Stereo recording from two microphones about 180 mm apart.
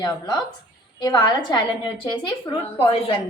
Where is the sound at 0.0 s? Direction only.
25° left (ahead or behind).